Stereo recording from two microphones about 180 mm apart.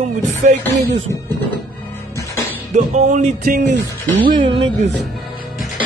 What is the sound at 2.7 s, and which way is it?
Speech, 40° right (ahead or behind).